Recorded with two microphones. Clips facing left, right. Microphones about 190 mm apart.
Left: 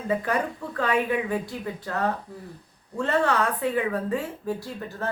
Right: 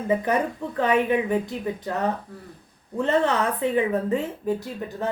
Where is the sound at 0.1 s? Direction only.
20° right (ahead or behind).